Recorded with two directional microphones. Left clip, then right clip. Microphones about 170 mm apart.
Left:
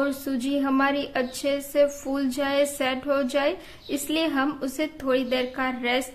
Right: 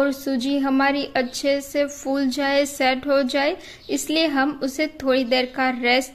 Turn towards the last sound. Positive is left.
turn(degrees=-25)  # may be behind; listen again after turning